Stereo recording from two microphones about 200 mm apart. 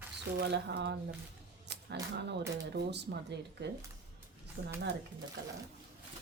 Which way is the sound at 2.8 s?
60° right (ahead or behind).